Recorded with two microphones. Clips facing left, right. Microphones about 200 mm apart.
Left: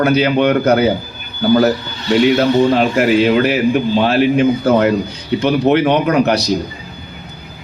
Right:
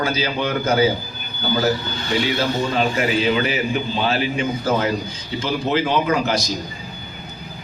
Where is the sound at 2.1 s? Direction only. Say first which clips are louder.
Left 10 dB; 60° left (ahead or behind).